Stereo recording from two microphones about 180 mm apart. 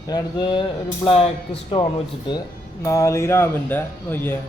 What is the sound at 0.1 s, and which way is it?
Speech, 25° left (ahead or behind).